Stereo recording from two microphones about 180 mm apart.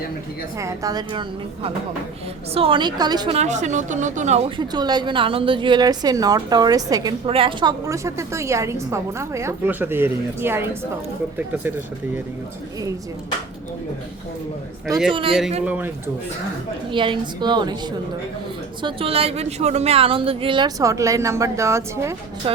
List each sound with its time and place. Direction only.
0.6 s a woman's voice: 20° right (ahead or behind)
2.6 s a woman's voice: 30° right (ahead or behind)
3.3 s a woman's voice: 40° right (ahead or behind); by 11.7 s 10° right (ahead or behind)
14.8 s a man's voice: centre (ahead or behind)
15.1 s a woman's voice: 30° right (ahead or behind)
15.6 s a woman's voice: 10° right (ahead or behind)
16.9 s a woman's voice: 25° right (ahead or behind)
18.8 s a woman's voice: 30° right (ahead or behind)
22.4 s speech: 30° right (ahead or behind)